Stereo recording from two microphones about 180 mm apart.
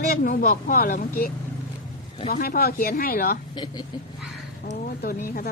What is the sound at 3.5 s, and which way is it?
Speech, 25° left (ahead or behind).